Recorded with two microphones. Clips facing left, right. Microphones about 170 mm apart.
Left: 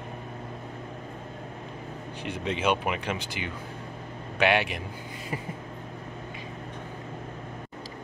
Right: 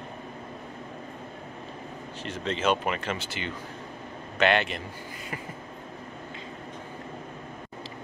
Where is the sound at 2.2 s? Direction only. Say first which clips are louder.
Even; 10° left (ahead or behind).